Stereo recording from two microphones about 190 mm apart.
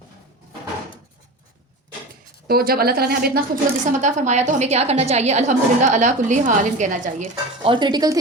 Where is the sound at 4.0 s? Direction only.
40° right (ahead or behind).